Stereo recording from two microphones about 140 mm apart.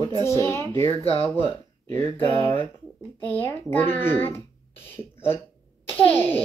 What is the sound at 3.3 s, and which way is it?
Speech, 15° left (ahead or behind).